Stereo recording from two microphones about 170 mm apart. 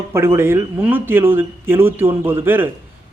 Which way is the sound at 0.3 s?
15° right (ahead or behind).